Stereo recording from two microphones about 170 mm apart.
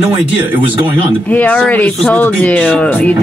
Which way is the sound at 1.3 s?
10° left (ahead or behind).